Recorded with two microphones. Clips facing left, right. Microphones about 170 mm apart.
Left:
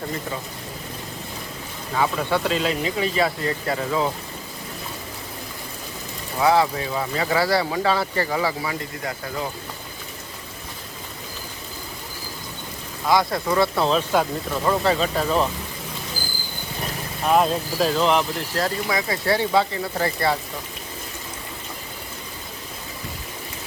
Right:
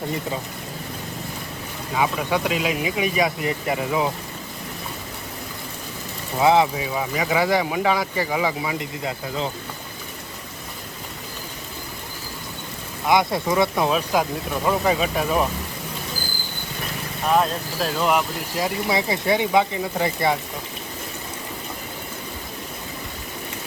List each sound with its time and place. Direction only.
1.9 s speech: 10° right (ahead or behind)
6.4 s speech: 20° right (ahead or behind)
6.7 s speech: 10° right (ahead or behind)
13.1 s speech: 20° right (ahead or behind)
17.2 s speech: centre (ahead or behind)
18.9 s speech: 25° right (ahead or behind)